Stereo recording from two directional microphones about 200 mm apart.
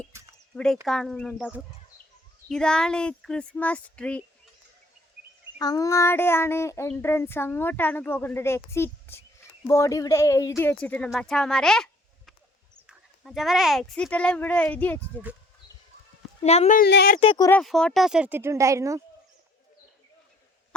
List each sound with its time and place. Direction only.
0.1 s a sound: 15° right (ahead or behind)
0.5 s speech: centre (ahead or behind)
1.4 s speech: 5° right (ahead or behind)
5.5 s a sound: 20° left (ahead or behind)
10.6 s speech: 10° left (ahead or behind)
16.4 s speech: 30° left (ahead or behind); by 17.2 s 50° left (ahead or behind)
17.2 s speech: 25° left (ahead or behind)
17.5 s speech: centre (ahead or behind); by 19.0 s 15° right (ahead or behind)